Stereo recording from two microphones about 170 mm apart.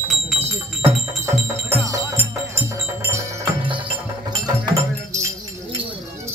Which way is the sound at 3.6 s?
30° right (ahead or behind).